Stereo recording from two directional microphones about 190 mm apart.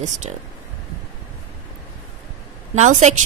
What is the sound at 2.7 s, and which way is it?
Speech, 40° right (ahead or behind).